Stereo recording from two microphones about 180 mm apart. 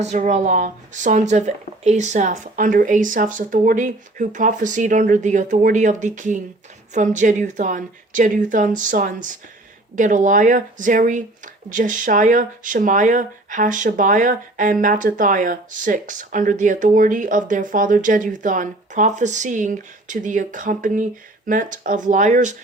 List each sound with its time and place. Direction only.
0.0 s speech: 40° right (ahead or behind)